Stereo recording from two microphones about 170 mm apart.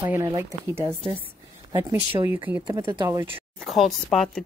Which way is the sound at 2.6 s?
20° right (ahead or behind).